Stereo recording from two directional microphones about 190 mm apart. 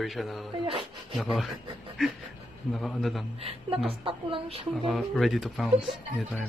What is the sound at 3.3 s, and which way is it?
A woman's voice, 30° right (ahead or behind).